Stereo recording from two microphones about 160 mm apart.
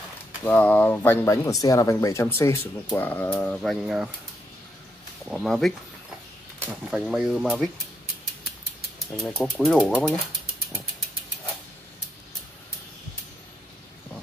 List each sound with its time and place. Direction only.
0.4 s speech: 10° left (ahead or behind); by 4.1 s 5° right (ahead or behind)
5.3 s speech: centre (ahead or behind)
6.6 s speech: 15° right (ahead or behind)
7.1 s speech: centre (ahead or behind)
9.2 s speech: 10° left (ahead or behind)